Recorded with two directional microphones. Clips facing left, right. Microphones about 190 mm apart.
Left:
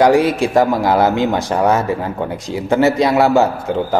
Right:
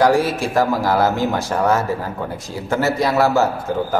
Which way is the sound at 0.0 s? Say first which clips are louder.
Left 4 dB; 20° left (ahead or behind).